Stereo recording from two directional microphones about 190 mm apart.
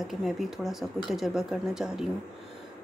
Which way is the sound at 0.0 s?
Centre (ahead or behind).